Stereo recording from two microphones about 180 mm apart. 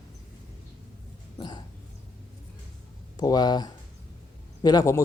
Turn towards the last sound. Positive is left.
turn(degrees=20)  # may be behind; listen again after turning